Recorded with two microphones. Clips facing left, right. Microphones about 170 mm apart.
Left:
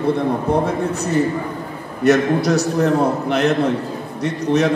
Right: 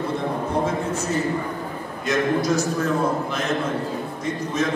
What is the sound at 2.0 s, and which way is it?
A man's voice, 70° left (ahead or behind).